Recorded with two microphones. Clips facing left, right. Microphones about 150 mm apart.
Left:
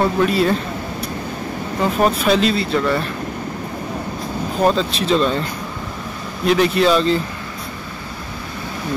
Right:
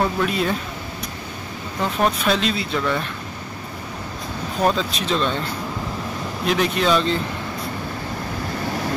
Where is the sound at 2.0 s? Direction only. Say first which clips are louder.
Left 4 dB; centre (ahead or behind).